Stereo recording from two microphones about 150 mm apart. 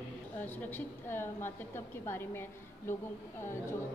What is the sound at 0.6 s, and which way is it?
A woman's voice, 15° left (ahead or behind).